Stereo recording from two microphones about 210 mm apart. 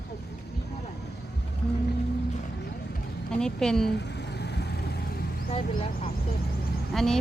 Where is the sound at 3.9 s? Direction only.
55° left (ahead or behind).